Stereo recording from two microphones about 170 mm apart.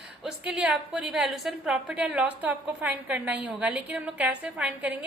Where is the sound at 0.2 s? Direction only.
5° right (ahead or behind).